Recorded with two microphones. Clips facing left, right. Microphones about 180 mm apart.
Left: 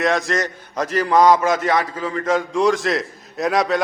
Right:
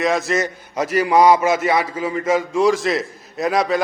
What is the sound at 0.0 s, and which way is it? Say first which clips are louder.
A man's voice: right 1 dB; centre (ahead or behind).